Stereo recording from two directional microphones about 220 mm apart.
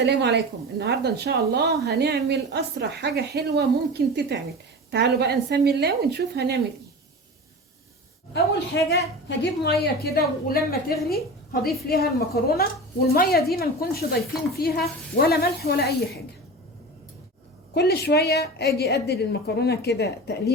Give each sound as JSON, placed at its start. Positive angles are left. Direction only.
{"t": 0.0, "sound": "speech", "side_deg": -50}
{"t": 8.7, "sound": "a woman's voice", "side_deg": 55}
{"t": 17.7, "sound": "a woman's voice", "side_deg": 45}